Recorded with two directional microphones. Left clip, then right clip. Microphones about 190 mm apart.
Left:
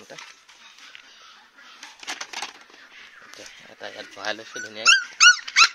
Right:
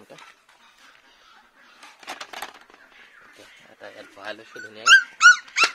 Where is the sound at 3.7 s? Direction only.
35° left (ahead or behind).